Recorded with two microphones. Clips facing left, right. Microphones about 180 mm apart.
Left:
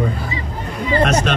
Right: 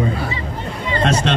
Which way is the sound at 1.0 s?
30° right (ahead or behind).